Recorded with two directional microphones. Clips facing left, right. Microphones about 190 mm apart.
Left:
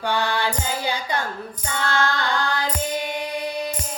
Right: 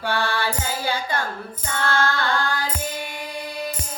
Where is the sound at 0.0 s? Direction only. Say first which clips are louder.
Left 1 dB; 15° left (ahead or behind).